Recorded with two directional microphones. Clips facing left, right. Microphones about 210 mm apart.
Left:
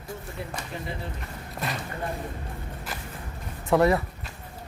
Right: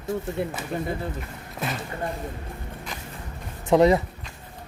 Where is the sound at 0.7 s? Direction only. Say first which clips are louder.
Right 9 dB; 50° right (ahead or behind).